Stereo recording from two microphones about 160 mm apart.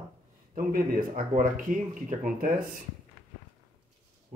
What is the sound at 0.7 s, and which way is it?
Speech, 60° right (ahead or behind).